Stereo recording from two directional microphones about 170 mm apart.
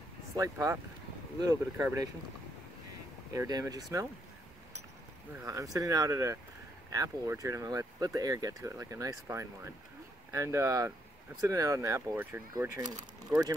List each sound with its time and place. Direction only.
0.4 s speech: 20° right (ahead or behind)
3.3 s speech: 20° right (ahead or behind)
5.4 s speech: 20° right (ahead or behind)